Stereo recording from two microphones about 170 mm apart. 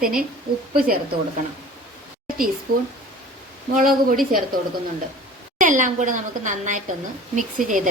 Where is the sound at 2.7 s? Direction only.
60° right (ahead or behind).